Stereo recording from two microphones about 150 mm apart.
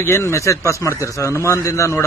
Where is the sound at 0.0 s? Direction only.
15° left (ahead or behind).